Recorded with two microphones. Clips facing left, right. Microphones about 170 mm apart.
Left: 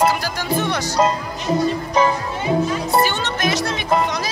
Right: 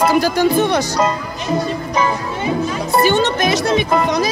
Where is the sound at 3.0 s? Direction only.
15° right (ahead or behind).